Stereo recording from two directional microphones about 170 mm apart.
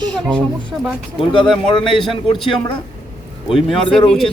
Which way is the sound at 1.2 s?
30° left (ahead or behind).